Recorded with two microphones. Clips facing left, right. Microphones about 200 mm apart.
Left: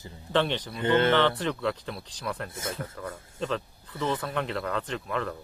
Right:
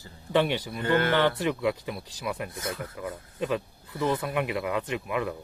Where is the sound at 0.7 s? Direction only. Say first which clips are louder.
Left 3 dB; 25° left (ahead or behind).